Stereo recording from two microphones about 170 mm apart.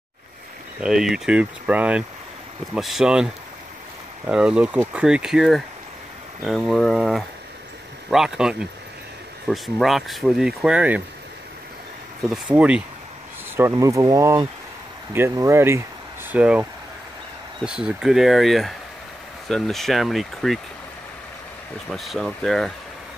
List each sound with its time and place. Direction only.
0.7 s speech: 5° right (ahead or behind)
4.3 s speech: 5° right (ahead or behind)
12.3 s speech: 5° right (ahead or behind)
13.6 s speech: 20° right (ahead or behind)
17.6 s speech: 5° right (ahead or behind)
21.8 s speech: centre (ahead or behind)